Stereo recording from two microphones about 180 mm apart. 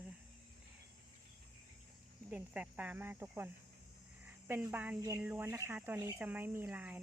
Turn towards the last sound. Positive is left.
turn(degrees=-10)  # may be behind; listen again after turning